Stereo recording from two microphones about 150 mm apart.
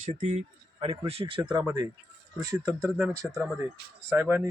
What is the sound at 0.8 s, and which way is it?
Speech, 40° right (ahead or behind).